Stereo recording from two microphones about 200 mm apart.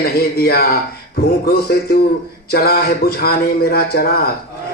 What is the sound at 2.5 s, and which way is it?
A man's voice, 50° left (ahead or behind).